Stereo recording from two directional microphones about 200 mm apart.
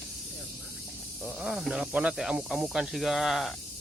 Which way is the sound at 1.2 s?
5° right (ahead or behind).